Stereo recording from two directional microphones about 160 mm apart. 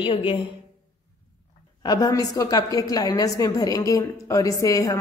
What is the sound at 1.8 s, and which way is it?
A woman's voice, 25° left (ahead or behind).